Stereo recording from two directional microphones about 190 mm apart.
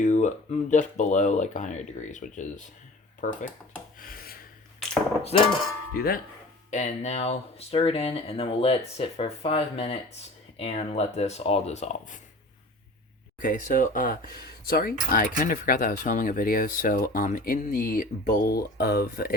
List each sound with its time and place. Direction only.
0.0 s a sound: 40° left (ahead or behind)
0.7 s speech: 40° left (ahead or behind)
3.9 s rub: 50° left (ahead or behind)
5.3 s speech: 30° left (ahead or behind)
6.0 s speech: 50° left (ahead or behind)
6.7 s speech: 40° left (ahead or behind)
13.4 s speech: 45° left (ahead or behind)